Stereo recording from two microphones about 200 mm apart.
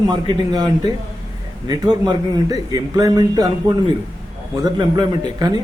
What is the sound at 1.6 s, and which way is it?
A man's voice, 20° right (ahead or behind).